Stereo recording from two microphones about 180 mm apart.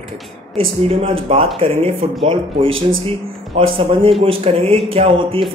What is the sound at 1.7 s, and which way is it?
Speech, 15° left (ahead or behind).